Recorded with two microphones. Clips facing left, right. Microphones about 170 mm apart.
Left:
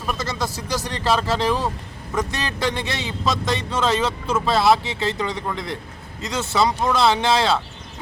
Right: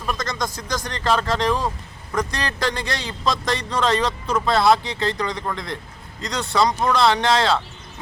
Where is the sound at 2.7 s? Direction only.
20° left (ahead or behind).